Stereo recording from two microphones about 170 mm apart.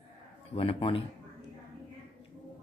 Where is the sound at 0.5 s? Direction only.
35° left (ahead or behind).